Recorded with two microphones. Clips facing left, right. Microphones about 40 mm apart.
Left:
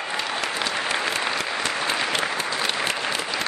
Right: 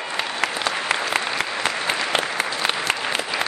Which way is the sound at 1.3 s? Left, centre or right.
Centre.